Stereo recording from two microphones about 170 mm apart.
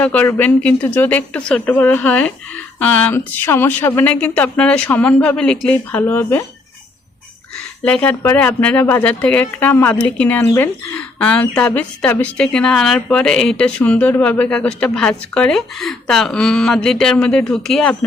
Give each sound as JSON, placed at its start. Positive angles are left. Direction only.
{"t": 0.0, "sound": "speech", "side_deg": 10}
{"t": 7.9, "sound": "a woman's voice", "side_deg": 10}